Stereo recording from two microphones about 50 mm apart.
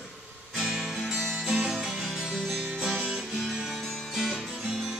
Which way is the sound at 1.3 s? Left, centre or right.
Centre.